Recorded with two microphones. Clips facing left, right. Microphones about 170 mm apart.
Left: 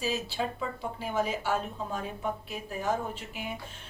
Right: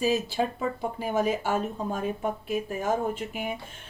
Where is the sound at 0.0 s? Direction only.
50° right (ahead or behind).